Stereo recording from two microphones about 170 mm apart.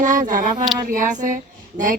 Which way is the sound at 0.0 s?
50° right (ahead or behind).